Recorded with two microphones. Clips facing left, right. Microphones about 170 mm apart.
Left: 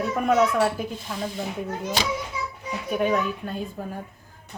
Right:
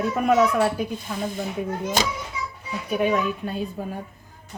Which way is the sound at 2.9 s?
5° right (ahead or behind).